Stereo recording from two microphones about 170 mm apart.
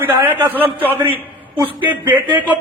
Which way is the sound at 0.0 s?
10° right (ahead or behind).